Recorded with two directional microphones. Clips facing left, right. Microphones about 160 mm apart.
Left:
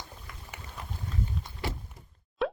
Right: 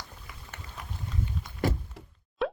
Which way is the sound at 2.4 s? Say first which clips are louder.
Even; centre (ahead or behind).